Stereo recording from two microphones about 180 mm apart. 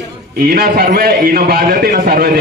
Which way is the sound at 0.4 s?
55° right (ahead or behind).